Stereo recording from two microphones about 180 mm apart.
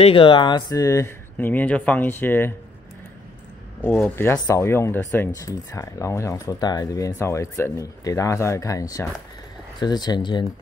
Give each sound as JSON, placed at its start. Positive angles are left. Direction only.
{"t": 0.0, "sound": "speech", "side_deg": 30}
{"t": 3.8, "sound": "speech", "side_deg": 10}